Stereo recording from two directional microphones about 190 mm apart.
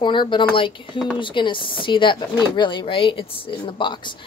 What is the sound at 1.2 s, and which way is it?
Speech, 25° left (ahead or behind).